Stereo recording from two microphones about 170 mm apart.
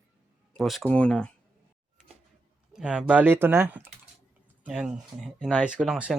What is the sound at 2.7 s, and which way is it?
Speech, 5° right (ahead or behind).